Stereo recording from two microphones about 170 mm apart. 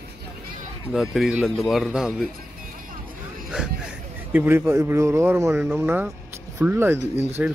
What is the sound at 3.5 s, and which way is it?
Vehicle, 5° right (ahead or behind).